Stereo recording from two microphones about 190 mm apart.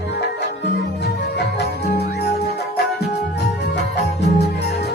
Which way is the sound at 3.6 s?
65° left (ahead or behind).